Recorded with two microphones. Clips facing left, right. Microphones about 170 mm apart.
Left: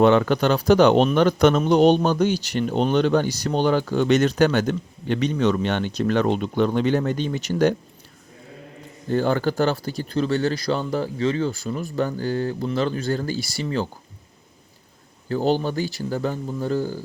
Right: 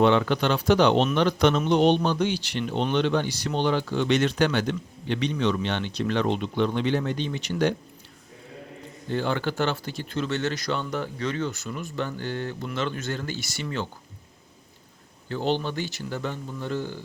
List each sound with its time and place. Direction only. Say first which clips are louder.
0.0 s speech: left 4 dB; 45° left (ahead or behind)
9.0 s speech: left 6 dB; 45° left (ahead or behind)
15.3 s speech: left 5 dB; 40° left (ahead or behind)